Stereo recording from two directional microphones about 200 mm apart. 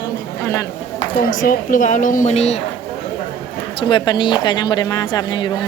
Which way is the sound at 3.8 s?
25° left (ahead or behind).